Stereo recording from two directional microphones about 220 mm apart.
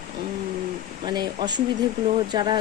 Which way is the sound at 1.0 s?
20° right (ahead or behind).